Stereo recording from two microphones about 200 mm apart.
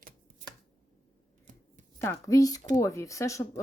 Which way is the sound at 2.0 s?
15° left (ahead or behind).